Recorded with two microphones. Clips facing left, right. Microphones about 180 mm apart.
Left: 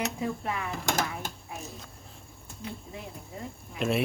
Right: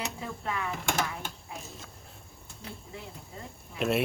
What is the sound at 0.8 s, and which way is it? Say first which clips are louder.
Speech: left 4 dB; 40° left (ahead or behind).